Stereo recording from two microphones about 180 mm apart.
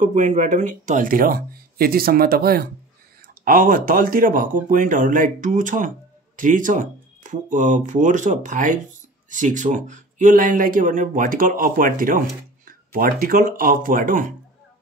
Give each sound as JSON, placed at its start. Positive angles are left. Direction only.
{"t": 0.0, "sound": "speech", "side_deg": -40}